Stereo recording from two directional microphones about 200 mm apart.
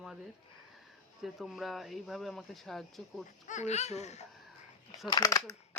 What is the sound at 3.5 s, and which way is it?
Speech, 35° left (ahead or behind).